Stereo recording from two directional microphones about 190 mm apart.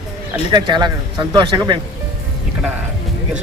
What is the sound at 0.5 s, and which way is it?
Speech, 20° right (ahead or behind).